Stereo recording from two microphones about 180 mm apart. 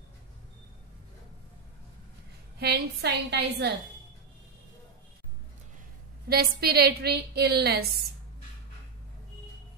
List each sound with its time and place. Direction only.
2.6 s a woman's voice: 65° right (ahead or behind)
6.2 s a woman's voice: 60° right (ahead or behind)